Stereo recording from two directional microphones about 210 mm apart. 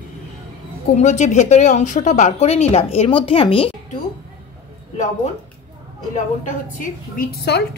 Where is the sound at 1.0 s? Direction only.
35° left (ahead or behind).